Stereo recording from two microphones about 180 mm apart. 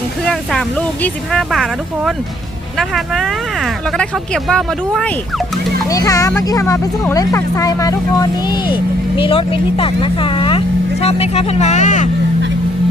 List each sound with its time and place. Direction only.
1.0 s speech: centre (ahead or behind)
2.7 s speech: centre (ahead or behind)
4.4 s speech: centre (ahead or behind)
5.9 s speech: 20° left (ahead or behind); by 12.0 s 40° left (ahead or behind)